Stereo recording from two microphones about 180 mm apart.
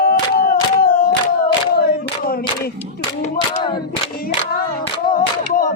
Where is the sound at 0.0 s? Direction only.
55° left (ahead or behind).